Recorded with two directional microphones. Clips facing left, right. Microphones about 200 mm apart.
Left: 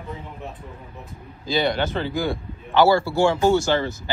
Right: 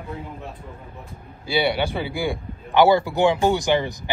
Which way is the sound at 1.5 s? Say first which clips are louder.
Even; 10° right (ahead or behind).